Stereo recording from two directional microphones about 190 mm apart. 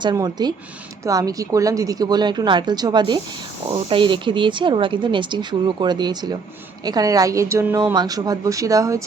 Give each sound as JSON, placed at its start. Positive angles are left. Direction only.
{"t": 0.0, "sound": "a woman's voice", "side_deg": -20}